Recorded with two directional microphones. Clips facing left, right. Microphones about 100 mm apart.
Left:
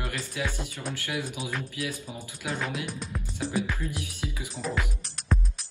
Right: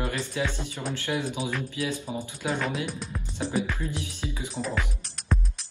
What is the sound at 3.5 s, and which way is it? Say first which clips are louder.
Music: right 1 dB; 25° right (ahead or behind).